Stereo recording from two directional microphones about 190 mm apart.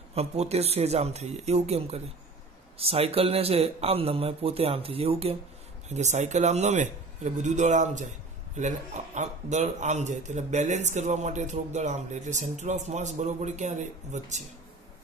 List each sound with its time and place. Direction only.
0.1 s a man's voice: 35° right (ahead or behind)